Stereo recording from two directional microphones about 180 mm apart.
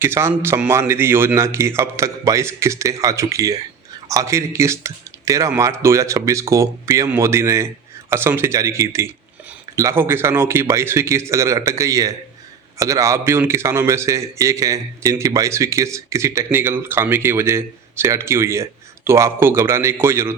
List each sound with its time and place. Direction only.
0.0 s a man's voice: 15° right (ahead or behind)